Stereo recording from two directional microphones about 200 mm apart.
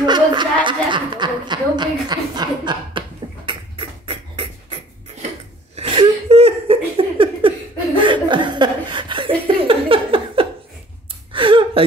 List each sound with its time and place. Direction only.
0.0 s chuckle: 20° right (ahead or behind)
0.7 s a woman's voice: 25° right (ahead or behind)
3.4 s beatboxing: 25° right (ahead or behind)
5.8 s laughter: 30° right (ahead or behind)
11.3 s gasp: 25° right (ahead or behind)